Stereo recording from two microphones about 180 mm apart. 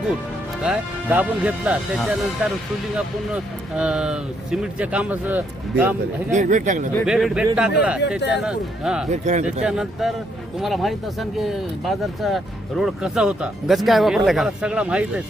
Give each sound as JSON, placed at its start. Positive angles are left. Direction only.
{"t": 0.6, "sound": "speech", "side_deg": -5}
{"t": 6.3, "sound": "speech", "side_deg": -45}
{"t": 7.0, "sound": "speech", "side_deg": -5}
{"t": 9.0, "sound": "speech", "side_deg": -40}
{"t": 9.6, "sound": "speech", "side_deg": 0}